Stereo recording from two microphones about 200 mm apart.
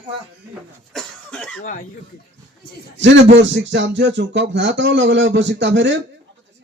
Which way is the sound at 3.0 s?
65° right (ahead or behind).